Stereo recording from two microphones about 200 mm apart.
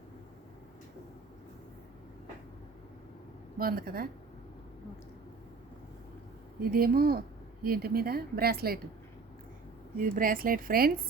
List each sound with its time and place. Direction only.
3.6 s a woman's voice: 50° right (ahead or behind)
6.6 s a woman's voice: 45° right (ahead or behind)
10.0 s a woman's voice: 45° right (ahead or behind)